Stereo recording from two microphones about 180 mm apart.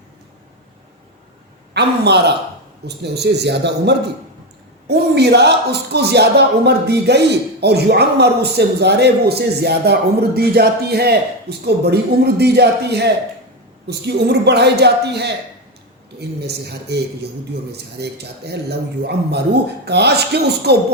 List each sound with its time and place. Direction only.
1.7 s a man's voice: 70° right (ahead or behind)
16.4 s speech: 65° right (ahead or behind)